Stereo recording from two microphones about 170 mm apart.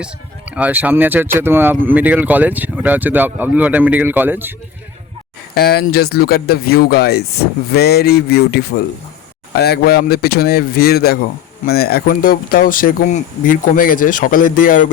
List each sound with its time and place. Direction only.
0.0 s speech: 10° right (ahead or behind)
5.5 s speech: 65° left (ahead or behind)